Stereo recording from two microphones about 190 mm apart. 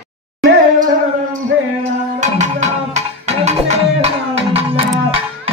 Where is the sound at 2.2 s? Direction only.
40° right (ahead or behind).